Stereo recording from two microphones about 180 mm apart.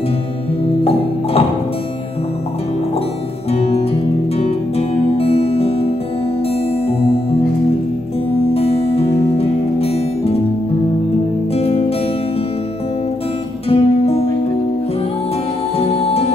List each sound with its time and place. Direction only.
3.5 s music: 35° left (ahead or behind)
8.5 s music: 35° left (ahead or behind)
11.5 s music: 35° left (ahead or behind)
13.7 s music: 35° left (ahead or behind)
15.8 s music: 35° left (ahead or behind)